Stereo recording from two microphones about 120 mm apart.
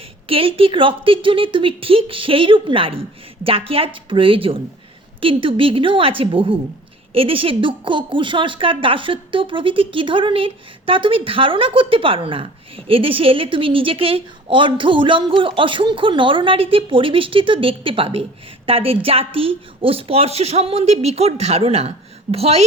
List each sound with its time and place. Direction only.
0.3 s a woman's voice: 50° right (ahead or behind)